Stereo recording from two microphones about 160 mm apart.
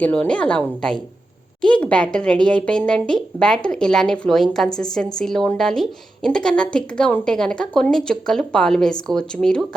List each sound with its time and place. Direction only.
0.0 s a woman's voice: 10° left (ahead or behind)
1.6 s a woman's voice: 5° left (ahead or behind)